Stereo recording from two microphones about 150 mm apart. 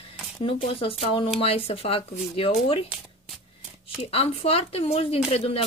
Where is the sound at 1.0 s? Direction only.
35° left (ahead or behind).